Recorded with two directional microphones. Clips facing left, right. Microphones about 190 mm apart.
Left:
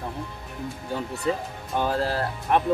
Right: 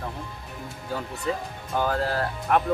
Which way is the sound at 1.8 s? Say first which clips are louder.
Even; 25° left (ahead or behind).